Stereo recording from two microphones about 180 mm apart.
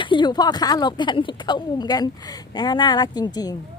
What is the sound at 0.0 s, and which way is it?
Speech, 25° left (ahead or behind).